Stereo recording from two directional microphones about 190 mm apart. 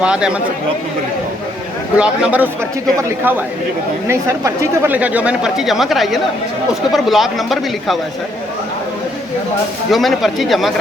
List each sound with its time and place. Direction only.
0.0 s speech: 5° right (ahead or behind)
2.0 s a man's voice: 5° right (ahead or behind)
9.9 s speech: centre (ahead or behind)